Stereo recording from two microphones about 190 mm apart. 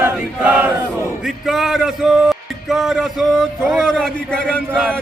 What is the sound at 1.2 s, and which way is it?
Music, centre (ahead or behind).